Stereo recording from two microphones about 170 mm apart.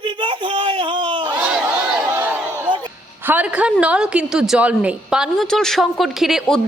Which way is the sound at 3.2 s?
10° right (ahead or behind).